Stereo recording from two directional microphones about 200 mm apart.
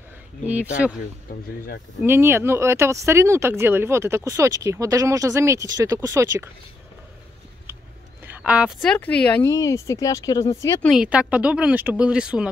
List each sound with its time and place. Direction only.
0.5 s speech: 5° right (ahead or behind)
1.3 s speech: 45° left (ahead or behind)
2.0 s speech: 10° right (ahead or behind)
8.2 s a sound: 10° right (ahead or behind)
8.9 s speech: 5° left (ahead or behind)
10.9 s speech: 5° right (ahead or behind)